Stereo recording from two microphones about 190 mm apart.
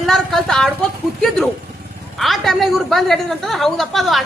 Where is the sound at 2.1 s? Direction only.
Centre (ahead or behind).